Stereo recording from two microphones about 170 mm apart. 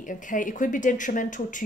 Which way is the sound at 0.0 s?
50° left (ahead or behind).